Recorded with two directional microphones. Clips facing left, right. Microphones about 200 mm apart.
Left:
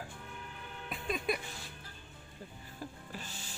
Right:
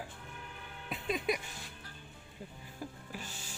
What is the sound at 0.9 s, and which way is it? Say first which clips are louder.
Music: right 1 dB; 15° right (ahead or behind).